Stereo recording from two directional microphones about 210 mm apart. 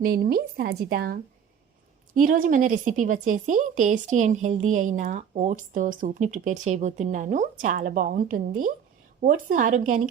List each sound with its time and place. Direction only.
0.0 s a woman's voice: 45° right (ahead or behind)